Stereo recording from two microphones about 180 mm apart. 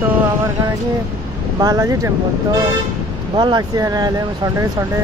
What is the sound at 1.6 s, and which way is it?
Speech, 20° right (ahead or behind).